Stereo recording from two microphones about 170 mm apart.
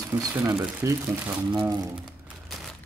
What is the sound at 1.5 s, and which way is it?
Speech, 25° right (ahead or behind).